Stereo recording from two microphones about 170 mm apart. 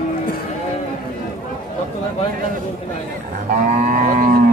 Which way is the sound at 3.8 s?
55° right (ahead or behind).